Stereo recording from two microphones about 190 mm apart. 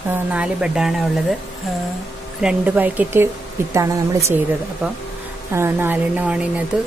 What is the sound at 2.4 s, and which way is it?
Speech, 5° right (ahead or behind).